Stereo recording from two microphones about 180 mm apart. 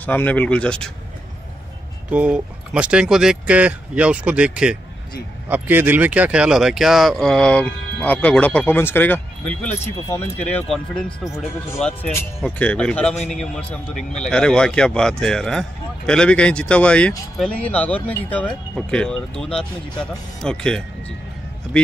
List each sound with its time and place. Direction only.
0.0 s speech: 10° left (ahead or behind)
2.0 s speech: 5° right (ahead or behind)